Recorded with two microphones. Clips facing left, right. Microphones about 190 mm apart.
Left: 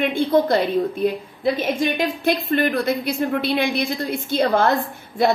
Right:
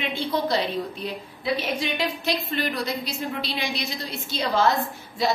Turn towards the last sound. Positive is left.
turn(degrees=55)  # may be behind; listen again after turning